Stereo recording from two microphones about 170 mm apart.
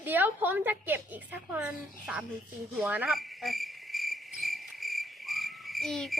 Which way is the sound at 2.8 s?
10° right (ahead or behind).